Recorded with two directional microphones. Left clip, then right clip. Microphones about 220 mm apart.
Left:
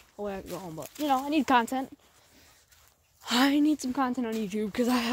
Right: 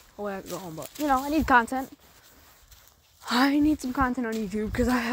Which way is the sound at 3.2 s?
10° right (ahead or behind).